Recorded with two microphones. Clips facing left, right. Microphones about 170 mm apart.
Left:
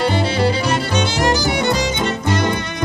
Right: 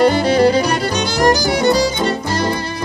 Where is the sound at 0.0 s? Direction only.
40° right (ahead or behind).